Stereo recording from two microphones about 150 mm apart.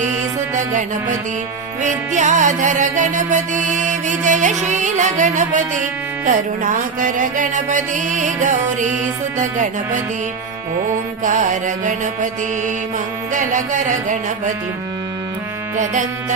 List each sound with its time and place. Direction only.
0.5 s music: 55° right (ahead or behind)
11.2 s music: 55° right (ahead or behind)